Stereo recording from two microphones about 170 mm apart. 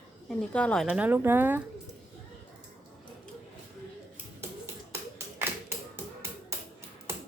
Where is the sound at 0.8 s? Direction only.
5° right (ahead or behind).